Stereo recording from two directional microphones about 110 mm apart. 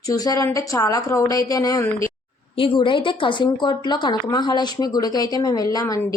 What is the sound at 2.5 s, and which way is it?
A woman's voice, 50° left (ahead or behind).